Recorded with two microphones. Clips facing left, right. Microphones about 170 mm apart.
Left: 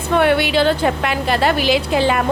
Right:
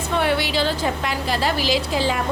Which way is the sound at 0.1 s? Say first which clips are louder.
Left 7 dB; 60° left (ahead or behind).